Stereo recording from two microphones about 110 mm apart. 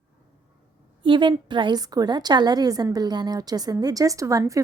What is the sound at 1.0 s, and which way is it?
A woman's voice, 50° right (ahead or behind).